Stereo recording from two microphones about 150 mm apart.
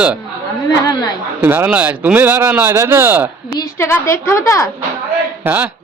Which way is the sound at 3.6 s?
15° left (ahead or behind).